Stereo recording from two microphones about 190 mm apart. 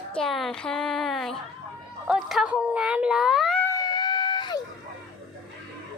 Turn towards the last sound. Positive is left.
turn(degrees=20)  # may be behind; listen again after turning